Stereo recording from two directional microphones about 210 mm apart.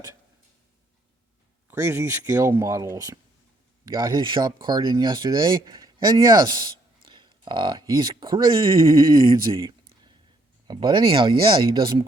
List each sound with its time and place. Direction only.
1.6 s speech: 15° right (ahead or behind)